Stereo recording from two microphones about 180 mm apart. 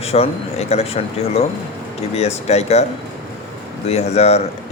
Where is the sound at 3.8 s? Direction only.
35° left (ahead or behind).